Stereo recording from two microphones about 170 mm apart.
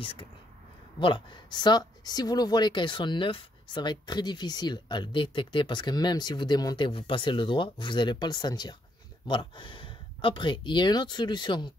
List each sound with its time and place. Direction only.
0.0 s speech: 30° left (ahead or behind)